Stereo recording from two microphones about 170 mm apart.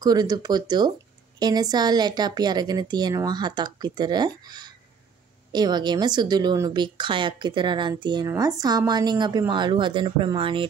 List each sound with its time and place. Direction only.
0.0 s speech: 25° right (ahead or behind)